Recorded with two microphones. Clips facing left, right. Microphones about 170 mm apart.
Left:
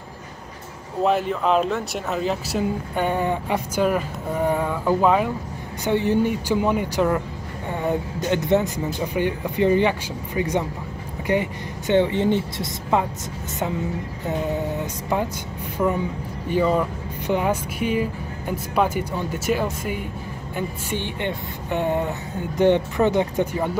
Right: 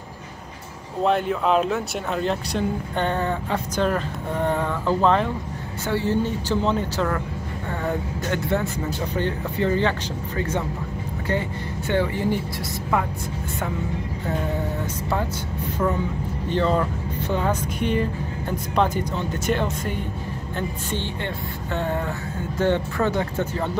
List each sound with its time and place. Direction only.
1.0 s speech: centre (ahead or behind)
11.9 s speech: 25° left (ahead or behind)
15.8 s speech: 10° left (ahead or behind)